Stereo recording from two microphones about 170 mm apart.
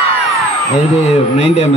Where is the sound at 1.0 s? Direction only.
40° left (ahead or behind).